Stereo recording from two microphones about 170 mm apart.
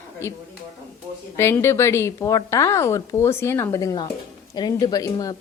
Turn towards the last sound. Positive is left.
turn(degrees=20)  # may be behind; listen again after turning